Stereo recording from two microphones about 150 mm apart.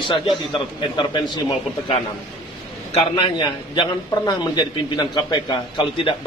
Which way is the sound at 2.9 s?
40° left (ahead or behind).